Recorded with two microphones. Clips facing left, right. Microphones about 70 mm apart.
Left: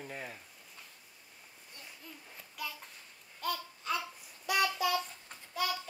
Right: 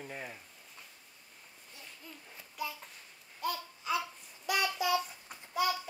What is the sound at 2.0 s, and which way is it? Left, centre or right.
Child singing, centre.